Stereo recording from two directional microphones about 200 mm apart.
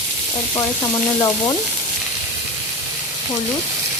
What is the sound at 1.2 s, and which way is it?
Frying, 20° left (ahead or behind).